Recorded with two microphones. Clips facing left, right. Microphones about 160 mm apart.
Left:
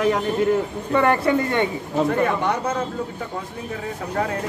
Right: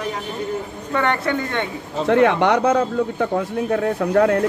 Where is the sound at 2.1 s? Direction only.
85° right.